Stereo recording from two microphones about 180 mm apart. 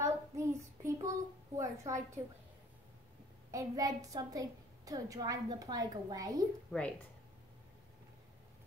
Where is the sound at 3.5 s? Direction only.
20° right (ahead or behind).